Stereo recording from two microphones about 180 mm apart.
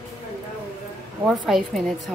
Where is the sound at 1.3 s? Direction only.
Centre (ahead or behind).